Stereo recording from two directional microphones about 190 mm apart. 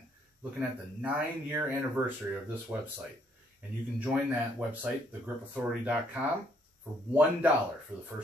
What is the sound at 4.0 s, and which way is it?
A man's voice, 10° right (ahead or behind).